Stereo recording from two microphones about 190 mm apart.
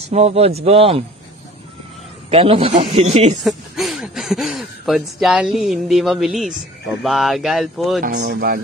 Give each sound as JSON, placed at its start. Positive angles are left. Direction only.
{"t": 0.1, "sound": "speech", "side_deg": -35}
{"t": 2.2, "sound": "speech", "side_deg": -30}
{"t": 3.3, "sound": "speech", "side_deg": 0}
{"t": 8.0, "sound": "speech", "side_deg": -50}